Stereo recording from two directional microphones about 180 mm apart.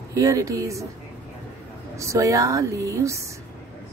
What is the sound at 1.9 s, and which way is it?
A woman's voice, 15° right (ahead or behind).